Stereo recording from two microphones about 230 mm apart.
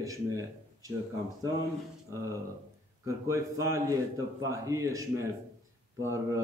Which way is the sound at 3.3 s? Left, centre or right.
Centre.